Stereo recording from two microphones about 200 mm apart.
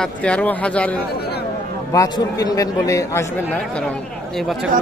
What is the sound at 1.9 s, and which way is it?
Speech, 15° left (ahead or behind).